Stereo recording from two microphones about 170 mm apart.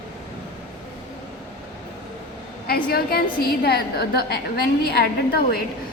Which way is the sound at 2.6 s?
65° left (ahead or behind).